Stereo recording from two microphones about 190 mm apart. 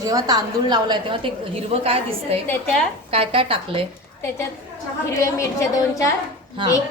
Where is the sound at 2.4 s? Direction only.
5° left (ahead or behind).